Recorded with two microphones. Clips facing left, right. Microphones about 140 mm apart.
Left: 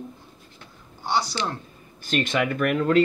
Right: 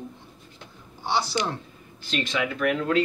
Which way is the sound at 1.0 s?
Centre (ahead or behind).